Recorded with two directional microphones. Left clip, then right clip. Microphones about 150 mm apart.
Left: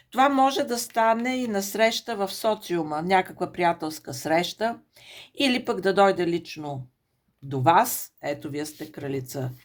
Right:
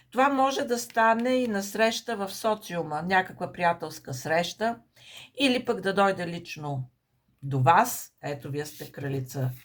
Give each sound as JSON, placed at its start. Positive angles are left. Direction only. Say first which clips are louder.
{"t": 0.1, "sound": "speech", "louder": "left 3 dB", "side_deg": 50}